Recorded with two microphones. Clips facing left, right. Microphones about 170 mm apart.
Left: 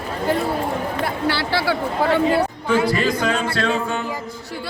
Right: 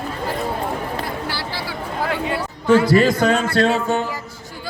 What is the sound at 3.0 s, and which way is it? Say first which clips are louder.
Speech: right 4 dB; 45° right (ahead or behind).